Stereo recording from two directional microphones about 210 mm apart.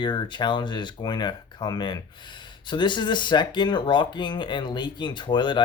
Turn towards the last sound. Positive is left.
turn(degrees=20)  # may be behind; listen again after turning